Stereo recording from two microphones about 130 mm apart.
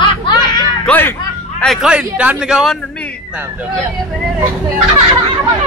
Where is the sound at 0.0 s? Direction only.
35° left (ahead or behind).